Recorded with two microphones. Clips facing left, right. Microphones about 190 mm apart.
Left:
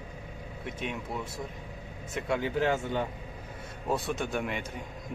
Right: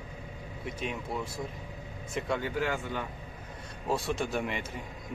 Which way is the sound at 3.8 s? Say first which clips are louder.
Even; centre (ahead or behind).